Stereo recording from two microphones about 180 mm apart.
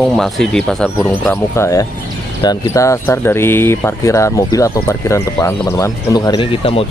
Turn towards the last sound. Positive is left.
turn(degrees=30)  # may be behind; listen again after turning